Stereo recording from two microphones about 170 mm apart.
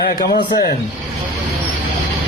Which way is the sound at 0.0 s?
65° left (ahead or behind).